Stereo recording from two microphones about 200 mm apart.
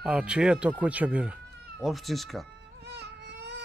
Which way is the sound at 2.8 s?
55° right (ahead or behind).